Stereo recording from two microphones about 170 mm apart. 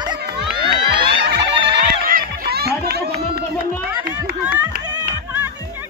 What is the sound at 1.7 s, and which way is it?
Music, 60° right (ahead or behind).